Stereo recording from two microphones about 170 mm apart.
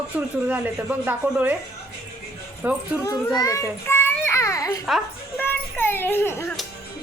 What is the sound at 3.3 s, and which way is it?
Children playing, 20° left (ahead or behind).